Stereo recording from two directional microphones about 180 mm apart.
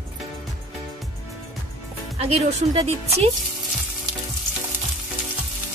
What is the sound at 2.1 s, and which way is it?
Speech, 35° right (ahead or behind).